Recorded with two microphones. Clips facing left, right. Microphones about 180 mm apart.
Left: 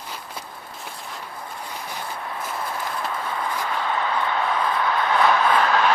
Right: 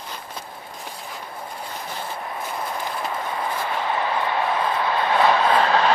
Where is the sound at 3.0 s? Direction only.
25° right (ahead or behind).